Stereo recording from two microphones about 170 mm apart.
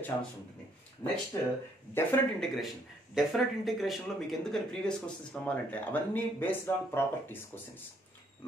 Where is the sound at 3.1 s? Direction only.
Centre (ahead or behind).